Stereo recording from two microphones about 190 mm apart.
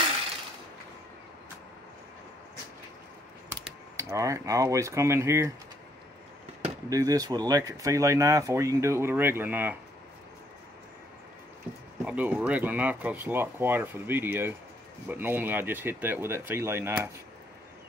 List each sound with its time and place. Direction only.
3.4 s speech: 15° right (ahead or behind)
6.9 s speech: 20° right (ahead or behind)
12.0 s speech: 5° right (ahead or behind)